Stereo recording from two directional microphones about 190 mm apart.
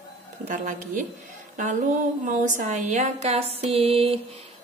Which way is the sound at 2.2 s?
45° right (ahead or behind).